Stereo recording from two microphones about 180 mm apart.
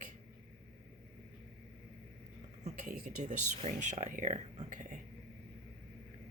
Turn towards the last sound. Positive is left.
turn(degrees=-45)  # may be behind; listen again after turning